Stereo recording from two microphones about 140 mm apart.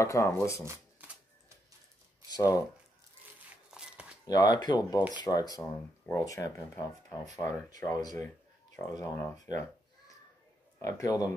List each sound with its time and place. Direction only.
0.0 s speech: 20° left (ahead or behind)
0.7 s shuffling cards: 10° right (ahead or behind)
2.2 s speech: 25° left (ahead or behind)
3.7 s a sound: 5° right (ahead or behind)
4.3 s speech: 30° left (ahead or behind)
10.8 s speech: 25° left (ahead or behind)